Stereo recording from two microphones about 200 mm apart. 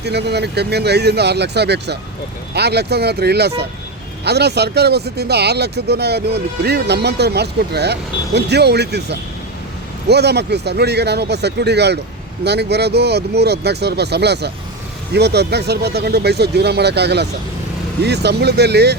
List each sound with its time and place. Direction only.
0.0 s speech: 55° right (ahead or behind)